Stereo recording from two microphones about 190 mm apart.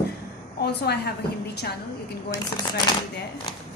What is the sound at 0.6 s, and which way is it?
Speech, 60° left (ahead or behind).